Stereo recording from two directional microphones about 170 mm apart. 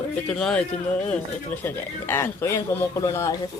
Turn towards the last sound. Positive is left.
turn(degrees=20)  # may be behind; listen again after turning